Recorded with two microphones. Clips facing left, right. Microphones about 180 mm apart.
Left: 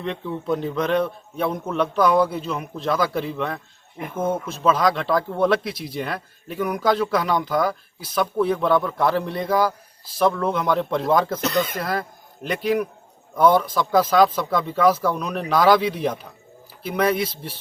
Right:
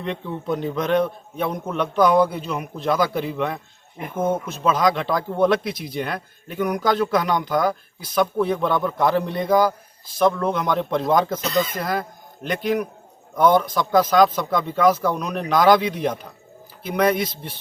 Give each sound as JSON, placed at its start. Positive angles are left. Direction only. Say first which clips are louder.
{"t": 0.0, "sound": "speech", "louder": "even", "side_deg": 0}
{"t": 11.3, "sound": "speech", "louder": "even", "side_deg": 60}
{"t": 11.8, "sound": "a man's voice", "louder": "right 1 dB", "side_deg": 5}